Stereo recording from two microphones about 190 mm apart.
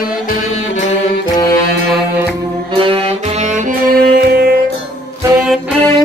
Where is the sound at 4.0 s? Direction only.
55° right (ahead or behind).